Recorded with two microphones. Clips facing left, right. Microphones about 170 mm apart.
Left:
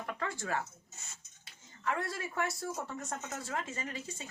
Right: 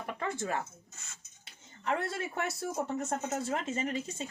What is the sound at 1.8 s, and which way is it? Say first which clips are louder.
Speech: right 3 dB; 25° right (ahead or behind).